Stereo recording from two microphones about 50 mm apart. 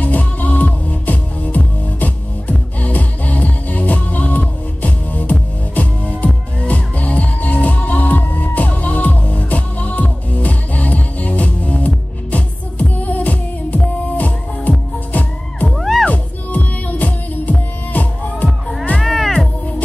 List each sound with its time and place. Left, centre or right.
0.0 s music: left
15.7 s music: centre
16.1 s music: left
18.9 s music: centre